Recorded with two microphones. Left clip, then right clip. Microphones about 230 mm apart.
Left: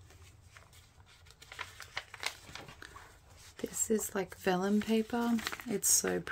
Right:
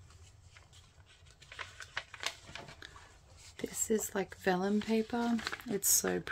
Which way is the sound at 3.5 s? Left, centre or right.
Centre.